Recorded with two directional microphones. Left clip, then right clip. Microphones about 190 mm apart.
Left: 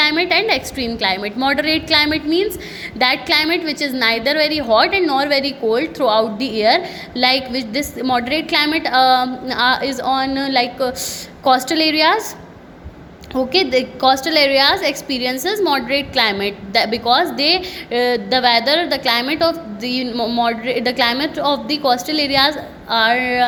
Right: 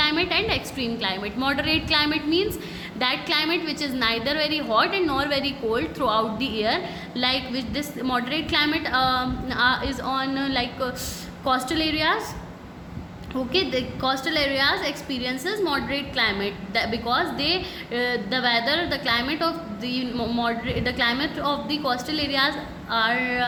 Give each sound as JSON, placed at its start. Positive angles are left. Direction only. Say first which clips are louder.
{"t": 0.0, "sound": "a woman's voice", "louder": "left 7 dB", "side_deg": 30}
{"t": 13.3, "sound": "a woman's voice", "louder": "left 8 dB", "side_deg": 35}